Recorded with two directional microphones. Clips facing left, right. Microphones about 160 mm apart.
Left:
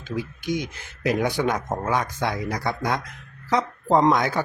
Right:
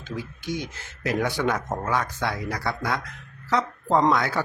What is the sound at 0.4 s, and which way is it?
Speech, 15° left (ahead or behind).